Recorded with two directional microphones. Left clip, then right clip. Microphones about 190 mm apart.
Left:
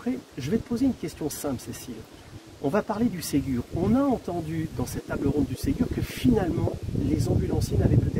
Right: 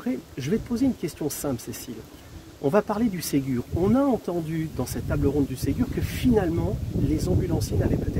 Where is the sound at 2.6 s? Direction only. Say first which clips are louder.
Right 3 dB; 45° right (ahead or behind).